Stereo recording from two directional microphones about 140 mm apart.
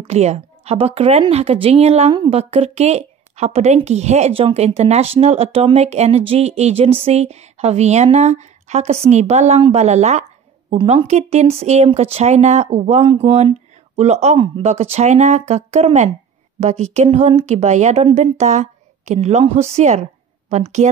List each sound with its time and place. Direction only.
0.0 s speech: 50° right (ahead or behind)
13.0 s speech: 35° right (ahead or behind)
13.3 s a woman's voice: 50° right (ahead or behind)